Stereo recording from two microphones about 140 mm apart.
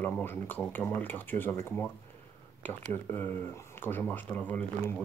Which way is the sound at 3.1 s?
15° left (ahead or behind).